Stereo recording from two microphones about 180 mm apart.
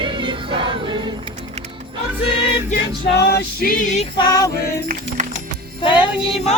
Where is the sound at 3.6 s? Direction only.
45° left (ahead or behind).